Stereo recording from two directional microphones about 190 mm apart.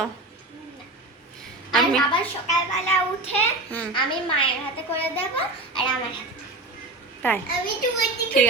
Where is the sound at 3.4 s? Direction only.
10° left (ahead or behind).